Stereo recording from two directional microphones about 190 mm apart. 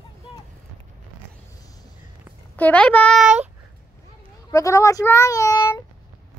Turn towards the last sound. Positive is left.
turn(degrees=15)  # may be behind; listen again after turning